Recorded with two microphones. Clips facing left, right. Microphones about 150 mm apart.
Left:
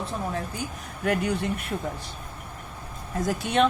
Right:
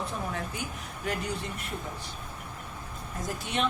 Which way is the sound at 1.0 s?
60° left (ahead or behind).